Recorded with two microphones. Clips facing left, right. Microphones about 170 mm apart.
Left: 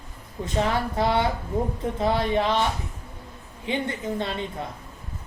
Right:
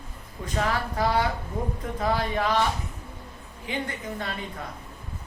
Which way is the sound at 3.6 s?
25° left (ahead or behind).